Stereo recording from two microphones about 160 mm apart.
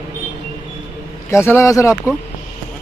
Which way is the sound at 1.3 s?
15° left (ahead or behind).